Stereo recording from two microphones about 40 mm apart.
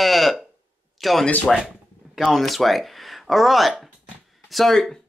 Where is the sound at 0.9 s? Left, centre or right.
Centre.